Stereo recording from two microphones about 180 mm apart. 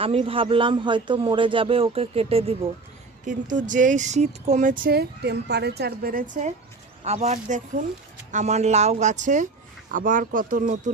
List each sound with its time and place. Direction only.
0.0 s a man's voice: 30° right (ahead or behind)
3.2 s speech: 45° right (ahead or behind)
7.0 s a man's voice: 35° right (ahead or behind)